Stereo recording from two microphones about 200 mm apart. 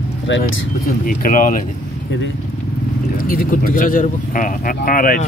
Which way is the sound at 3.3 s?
45° left (ahead or behind).